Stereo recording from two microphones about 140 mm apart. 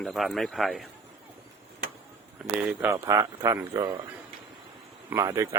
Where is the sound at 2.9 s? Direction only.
25° right (ahead or behind).